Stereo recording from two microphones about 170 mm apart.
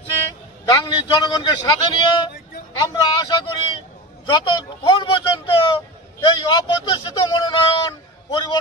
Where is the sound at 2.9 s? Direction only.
25° left (ahead or behind).